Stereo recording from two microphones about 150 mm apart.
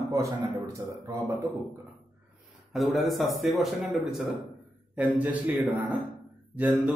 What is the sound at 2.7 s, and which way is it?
A man's voice, centre (ahead or behind).